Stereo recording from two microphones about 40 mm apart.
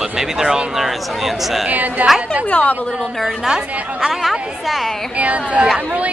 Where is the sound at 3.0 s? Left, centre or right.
Centre.